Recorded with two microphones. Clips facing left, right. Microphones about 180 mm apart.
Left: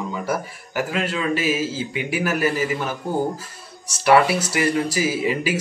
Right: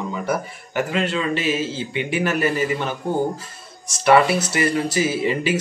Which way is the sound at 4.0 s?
5° left (ahead or behind).